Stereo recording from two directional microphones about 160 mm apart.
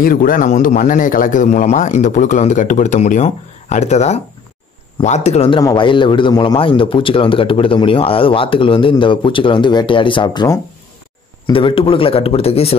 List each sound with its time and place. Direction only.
0.0 s speech: 60° left (ahead or behind); by 5.6 s 40° left (ahead or behind)
5.6 s a man's voice: 25° left (ahead or behind)